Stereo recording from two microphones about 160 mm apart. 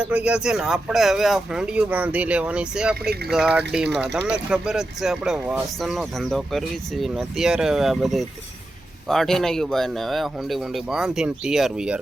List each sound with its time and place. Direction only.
0.0 s speech: 5° right (ahead or behind)
2.9 s speech: 80° right
3.3 s speech: 5° right (ahead or behind)